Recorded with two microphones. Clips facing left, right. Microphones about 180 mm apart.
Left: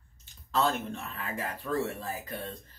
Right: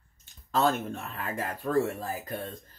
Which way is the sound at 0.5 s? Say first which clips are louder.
Right 2 dB; 45° right (ahead or behind).